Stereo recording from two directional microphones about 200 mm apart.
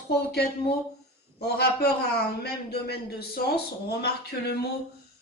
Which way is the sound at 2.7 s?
55° left (ahead or behind).